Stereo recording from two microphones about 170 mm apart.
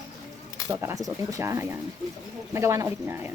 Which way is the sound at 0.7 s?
15° right (ahead or behind).